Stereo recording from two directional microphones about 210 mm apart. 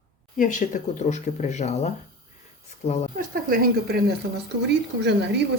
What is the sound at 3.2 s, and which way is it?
Speech, 45° right (ahead or behind).